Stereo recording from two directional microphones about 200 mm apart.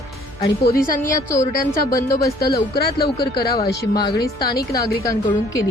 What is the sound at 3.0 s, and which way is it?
Speech, 50° left (ahead or behind).